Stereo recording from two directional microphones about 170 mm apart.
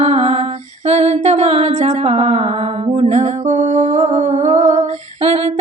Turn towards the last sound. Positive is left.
turn(degrees=-40)  # may be behind; listen again after turning